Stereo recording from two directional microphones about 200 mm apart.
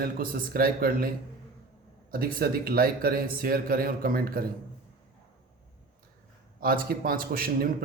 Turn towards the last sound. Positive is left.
turn(degrees=-45)  # may be behind; listen again after turning